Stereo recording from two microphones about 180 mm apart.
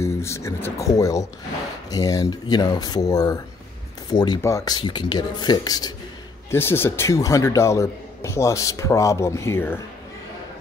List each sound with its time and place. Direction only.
0.0 s a man's voice: 15° left (ahead or behind)